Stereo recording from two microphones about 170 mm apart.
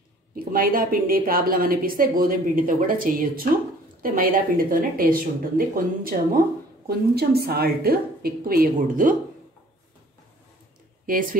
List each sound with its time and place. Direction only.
0.5 s a woman's voice: 60° right (ahead or behind)